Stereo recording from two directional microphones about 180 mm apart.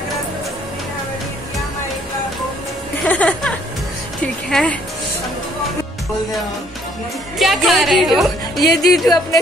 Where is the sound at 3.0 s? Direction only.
5° left (ahead or behind).